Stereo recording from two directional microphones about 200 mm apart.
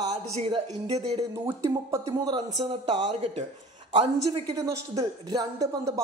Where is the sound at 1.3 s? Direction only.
15° right (ahead or behind); by 3.5 s 30° right (ahead or behind).